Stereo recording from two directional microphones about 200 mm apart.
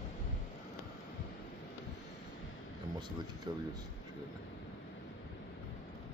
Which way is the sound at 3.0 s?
20° right (ahead or behind).